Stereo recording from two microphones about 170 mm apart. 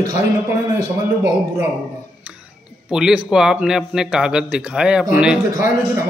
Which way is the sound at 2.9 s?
5° right (ahead or behind).